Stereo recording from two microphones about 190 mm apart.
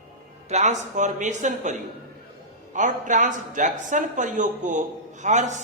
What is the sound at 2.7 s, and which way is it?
Speech, 40° right (ahead or behind).